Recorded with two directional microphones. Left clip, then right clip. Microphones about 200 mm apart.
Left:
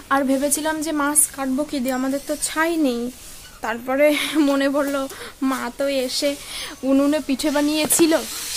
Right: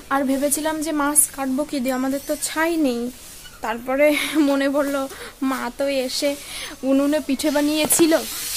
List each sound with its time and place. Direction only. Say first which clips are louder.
0.1 s speech: left 1 dB; 5° left (ahead or behind)